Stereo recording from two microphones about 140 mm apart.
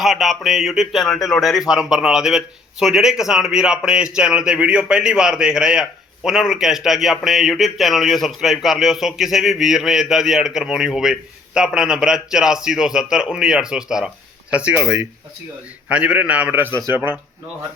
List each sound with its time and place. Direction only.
0.0 s a man's voice: centre (ahead or behind)
15.9 s a man's voice: 10° right (ahead or behind)